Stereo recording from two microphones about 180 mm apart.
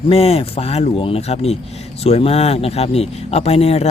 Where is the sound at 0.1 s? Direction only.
35° left (ahead or behind).